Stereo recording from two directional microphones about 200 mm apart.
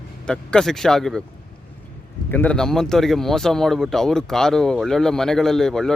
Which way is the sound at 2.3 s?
5° left (ahead or behind).